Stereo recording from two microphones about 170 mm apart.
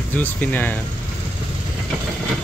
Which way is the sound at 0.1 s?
10° left (ahead or behind).